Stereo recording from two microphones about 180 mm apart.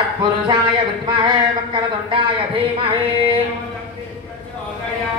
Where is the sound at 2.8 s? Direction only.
30° right (ahead or behind).